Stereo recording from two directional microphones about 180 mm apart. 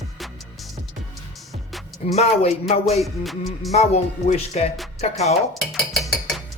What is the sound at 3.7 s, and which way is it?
Speech, 35° left (ahead or behind).